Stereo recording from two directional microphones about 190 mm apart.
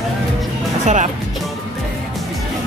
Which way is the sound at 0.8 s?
40° right (ahead or behind).